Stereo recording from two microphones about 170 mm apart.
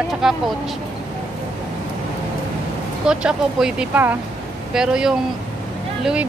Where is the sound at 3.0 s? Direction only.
5° right (ahead or behind).